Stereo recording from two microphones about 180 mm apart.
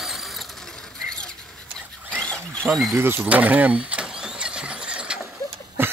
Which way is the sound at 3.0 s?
10° right (ahead or behind).